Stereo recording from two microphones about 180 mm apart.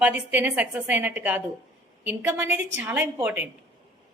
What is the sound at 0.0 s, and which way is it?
A woman's voice, 10° right (ahead or behind).